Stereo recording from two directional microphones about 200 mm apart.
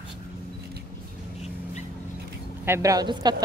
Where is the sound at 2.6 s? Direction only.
15° right (ahead or behind).